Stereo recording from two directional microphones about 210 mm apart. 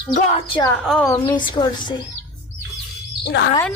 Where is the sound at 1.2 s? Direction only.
20° left (ahead or behind).